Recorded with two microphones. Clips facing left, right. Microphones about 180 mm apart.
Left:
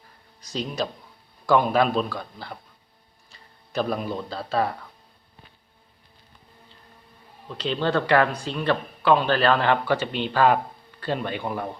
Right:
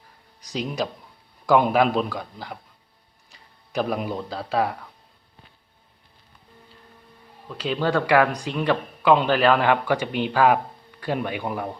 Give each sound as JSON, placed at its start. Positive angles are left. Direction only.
{"t": 0.5, "sound": "speech", "side_deg": -15}
{"t": 7.5, "sound": "speech", "side_deg": -10}